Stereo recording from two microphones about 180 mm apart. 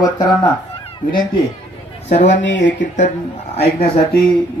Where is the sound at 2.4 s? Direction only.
90° left.